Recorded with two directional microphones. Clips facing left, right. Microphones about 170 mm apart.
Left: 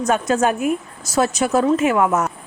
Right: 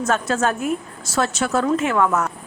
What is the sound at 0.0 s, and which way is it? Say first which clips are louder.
A woman's voice: left 3 dB; 15° left (ahead or behind).